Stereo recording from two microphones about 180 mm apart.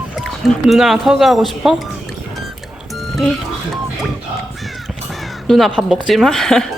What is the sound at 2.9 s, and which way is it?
Music, centre (ahead or behind).